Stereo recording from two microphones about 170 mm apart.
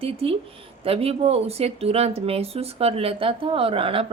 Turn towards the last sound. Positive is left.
turn(degrees=-35)  # may be behind; listen again after turning